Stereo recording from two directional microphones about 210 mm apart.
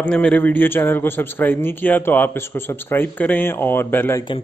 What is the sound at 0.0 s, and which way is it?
A man's voice, 5° left (ahead or behind).